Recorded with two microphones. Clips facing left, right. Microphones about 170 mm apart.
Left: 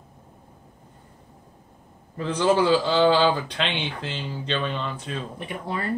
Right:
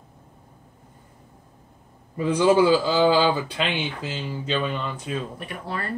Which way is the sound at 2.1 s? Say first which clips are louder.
Right 3 dB; 10° right (ahead or behind).